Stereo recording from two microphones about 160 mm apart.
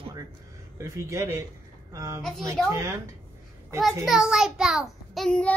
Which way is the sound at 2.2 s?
5° left (ahead or behind).